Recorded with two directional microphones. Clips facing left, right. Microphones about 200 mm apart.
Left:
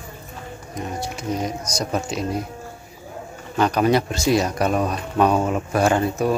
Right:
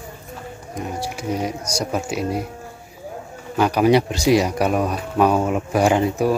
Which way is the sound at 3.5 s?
10° right (ahead or behind).